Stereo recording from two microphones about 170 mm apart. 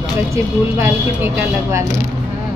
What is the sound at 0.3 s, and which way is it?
Speech, 15° right (ahead or behind).